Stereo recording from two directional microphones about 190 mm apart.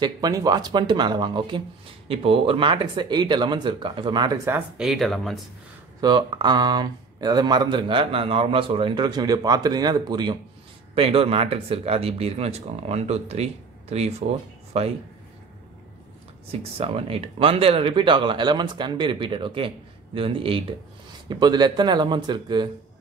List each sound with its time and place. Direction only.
0.0 s speech: 20° right (ahead or behind)
4.5 s speech: 5° right (ahead or behind)
5.9 s speech: 25° right (ahead or behind)
16.7 s speech: 30° right (ahead or behind)